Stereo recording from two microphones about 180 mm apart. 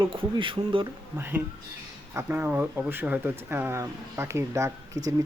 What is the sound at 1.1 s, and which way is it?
Speech, 10° right (ahead or behind).